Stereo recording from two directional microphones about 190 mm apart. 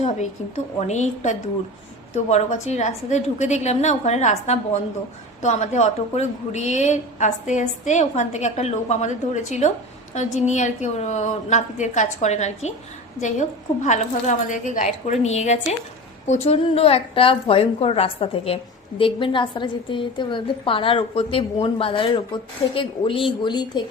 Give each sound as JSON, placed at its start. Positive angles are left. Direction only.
{"t": 0.8, "sound": "a woman's voice", "side_deg": 35}